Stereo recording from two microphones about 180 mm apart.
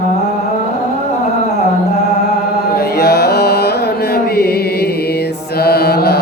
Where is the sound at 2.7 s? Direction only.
60° left (ahead or behind).